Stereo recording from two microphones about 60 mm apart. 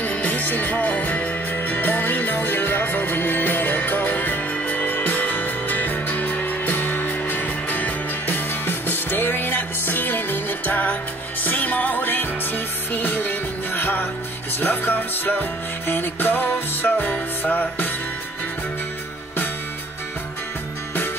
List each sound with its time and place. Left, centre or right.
0.0 s music: left